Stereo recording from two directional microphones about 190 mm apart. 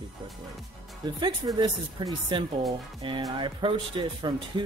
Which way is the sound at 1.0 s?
25° right (ahead or behind).